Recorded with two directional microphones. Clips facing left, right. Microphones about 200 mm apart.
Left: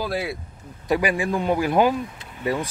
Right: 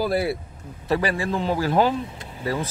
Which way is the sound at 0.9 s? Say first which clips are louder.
Left 1 dB; 15° left (ahead or behind).